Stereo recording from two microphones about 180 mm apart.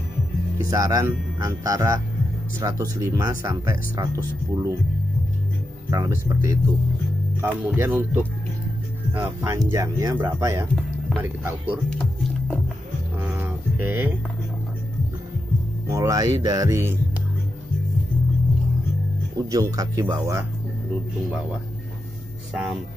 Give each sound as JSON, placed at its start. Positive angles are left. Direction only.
{"t": 0.6, "sound": "speech", "side_deg": -20}
{"t": 5.9, "sound": "speech", "side_deg": -20}
{"t": 11.9, "sound": "speech", "side_deg": 5}
{"t": 13.2, "sound": "a sound", "side_deg": -10}
{"t": 15.9, "sound": "speech", "side_deg": -20}
{"t": 19.3, "sound": "speech", "side_deg": -20}